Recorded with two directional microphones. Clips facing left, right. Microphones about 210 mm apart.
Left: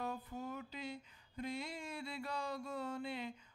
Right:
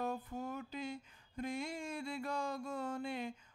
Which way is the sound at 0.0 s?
45° right (ahead or behind).